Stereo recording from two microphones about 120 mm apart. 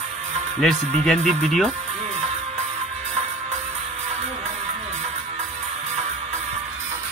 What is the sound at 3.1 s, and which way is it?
Music, 60° right (ahead or behind).